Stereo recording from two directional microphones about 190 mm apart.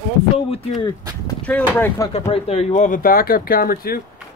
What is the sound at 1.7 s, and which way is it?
Speech, 15° left (ahead or behind).